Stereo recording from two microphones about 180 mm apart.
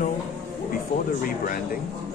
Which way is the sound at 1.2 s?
50° left (ahead or behind).